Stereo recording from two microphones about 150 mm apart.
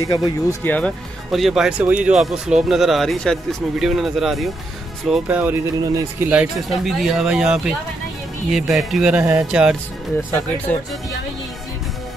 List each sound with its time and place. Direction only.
0.0 s speech: 25° left (ahead or behind)
0.7 s speech: 10° left (ahead or behind)
1.3 s speech: centre (ahead or behind)
5.8 s speech: 25° right (ahead or behind)
6.2 s speech: 10° right (ahead or behind)